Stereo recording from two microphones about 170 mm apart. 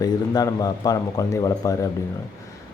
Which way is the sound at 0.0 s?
20° left (ahead or behind).